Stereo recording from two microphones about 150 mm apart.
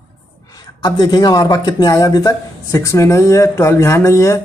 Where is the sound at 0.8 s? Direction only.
25° left (ahead or behind).